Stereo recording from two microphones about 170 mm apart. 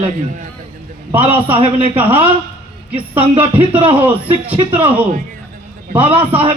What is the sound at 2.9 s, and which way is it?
Speech, 30° right (ahead or behind).